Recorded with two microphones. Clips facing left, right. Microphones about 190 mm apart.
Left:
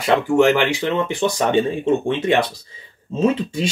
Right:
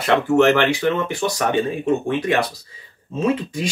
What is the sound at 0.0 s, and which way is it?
A man's voice, 15° left (ahead or behind).